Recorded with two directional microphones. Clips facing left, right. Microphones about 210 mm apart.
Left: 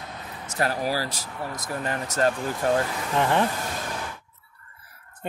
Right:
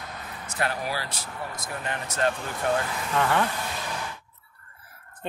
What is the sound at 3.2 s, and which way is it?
Speech, 25° left (ahead or behind).